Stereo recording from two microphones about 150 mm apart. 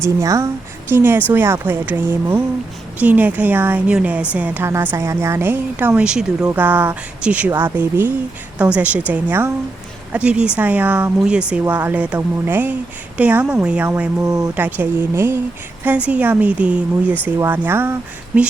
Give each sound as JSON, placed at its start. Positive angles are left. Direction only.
{"t": 0.0, "sound": "a woman's voice", "side_deg": -20}
{"t": 14.3, "sound": "a woman's voice", "side_deg": -25}
{"t": 14.5, "sound": "speech", "side_deg": -10}